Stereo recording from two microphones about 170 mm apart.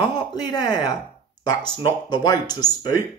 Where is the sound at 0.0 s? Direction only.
25° left (ahead or behind).